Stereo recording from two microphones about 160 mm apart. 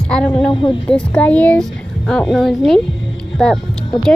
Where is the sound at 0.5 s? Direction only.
30° left (ahead or behind).